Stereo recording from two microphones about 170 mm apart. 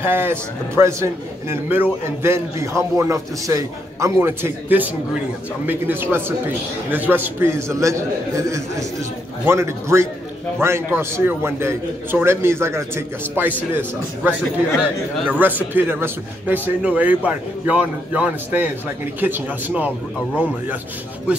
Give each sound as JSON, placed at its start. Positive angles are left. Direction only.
{"t": 0.0, "sound": "a man's voice", "side_deg": -10}
{"t": 15.2, "sound": "a man's voice", "side_deg": -10}